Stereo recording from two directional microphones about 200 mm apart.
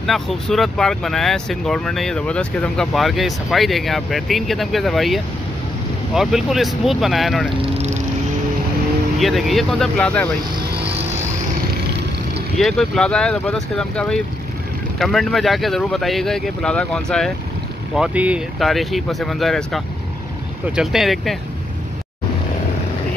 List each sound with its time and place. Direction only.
0.0 s speech: centre (ahead or behind)
7.6 s vehicle: 35° right (ahead or behind)
9.2 s speech: centre (ahead or behind)
12.5 s speech: centre (ahead or behind)